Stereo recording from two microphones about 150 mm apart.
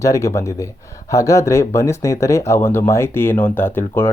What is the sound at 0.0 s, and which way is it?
Speech, 20° left (ahead or behind).